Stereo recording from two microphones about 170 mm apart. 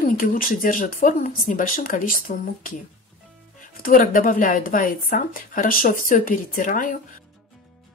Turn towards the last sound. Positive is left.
turn(degrees=50)  # may be behind; listen again after turning